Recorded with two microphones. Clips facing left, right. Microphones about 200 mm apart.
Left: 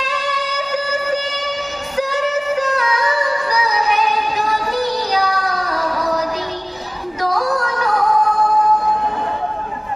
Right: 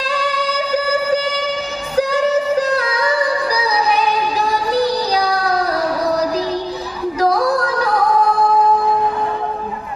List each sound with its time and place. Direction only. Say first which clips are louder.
0.0 s music: right 2 dB; 35° right (ahead or behind)
2.0 s music: right 4 dB; 35° right (ahead or behind)